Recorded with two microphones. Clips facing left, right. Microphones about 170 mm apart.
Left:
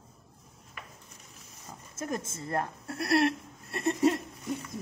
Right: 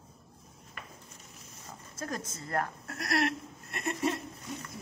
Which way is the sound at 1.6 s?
20° left (ahead or behind).